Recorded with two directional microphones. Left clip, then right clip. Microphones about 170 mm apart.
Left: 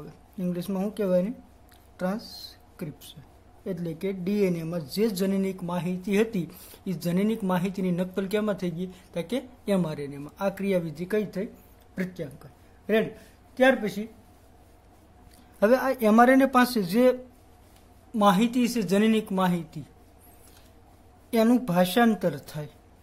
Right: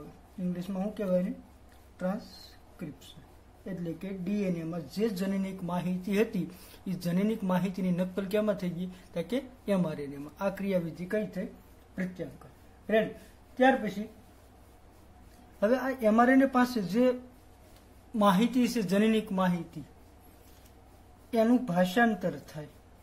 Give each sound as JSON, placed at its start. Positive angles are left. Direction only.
{"t": 0.5, "sound": "a woman's voice", "side_deg": 55}
{"t": 3.6, "sound": "speech", "side_deg": 55}
{"t": 11.1, "sound": "a man's voice", "side_deg": 50}
{"t": 13.6, "sound": "a man's voice", "side_deg": 50}
{"t": 15.6, "sound": "a man's voice", "side_deg": 45}
{"t": 18.1, "sound": "speech", "side_deg": 35}
{"t": 21.3, "sound": "a man's voice", "side_deg": 50}